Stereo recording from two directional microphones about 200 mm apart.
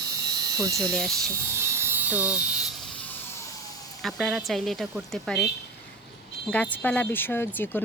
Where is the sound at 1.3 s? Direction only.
10° right (ahead or behind).